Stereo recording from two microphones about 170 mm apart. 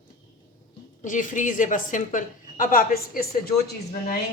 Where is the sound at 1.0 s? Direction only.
50° left (ahead or behind).